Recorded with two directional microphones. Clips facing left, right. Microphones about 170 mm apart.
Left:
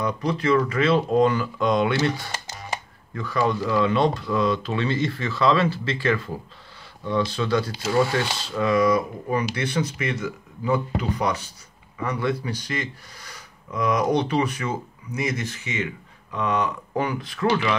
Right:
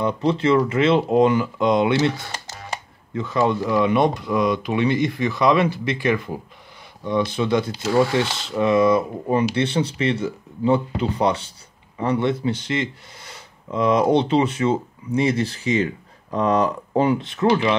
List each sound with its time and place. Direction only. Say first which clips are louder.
0.0 s speech: right 4 dB; 25° right (ahead or behind)